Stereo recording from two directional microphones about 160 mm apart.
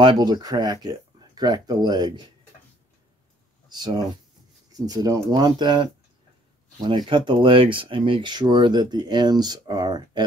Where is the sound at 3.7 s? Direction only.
25° right (ahead or behind).